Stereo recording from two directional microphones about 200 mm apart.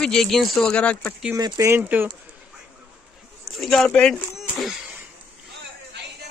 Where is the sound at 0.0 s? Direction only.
Centre (ahead or behind).